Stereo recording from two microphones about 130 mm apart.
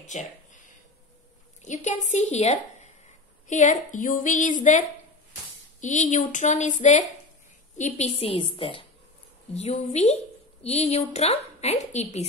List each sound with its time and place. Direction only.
0.0 s a sound: 65° left (ahead or behind)
1.6 s a woman's voice: 65° left (ahead or behind); by 8.8 s 45° left (ahead or behind)
9.5 s a woman's voice: 60° left (ahead or behind)